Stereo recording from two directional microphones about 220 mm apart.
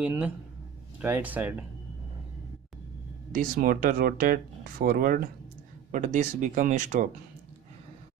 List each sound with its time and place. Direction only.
0.0 s speech: 5° right (ahead or behind)
3.3 s speech: 40° right (ahead or behind)